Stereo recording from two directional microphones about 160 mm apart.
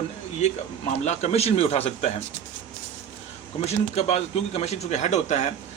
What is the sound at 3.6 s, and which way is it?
A man's voice, 40° left (ahead or behind).